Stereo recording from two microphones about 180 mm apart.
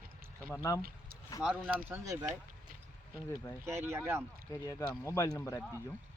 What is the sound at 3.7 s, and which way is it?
Speech, 15° right (ahead or behind).